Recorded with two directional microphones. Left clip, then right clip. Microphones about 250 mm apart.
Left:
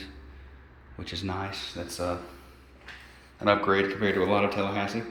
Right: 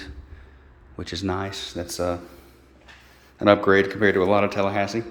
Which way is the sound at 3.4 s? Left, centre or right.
Right.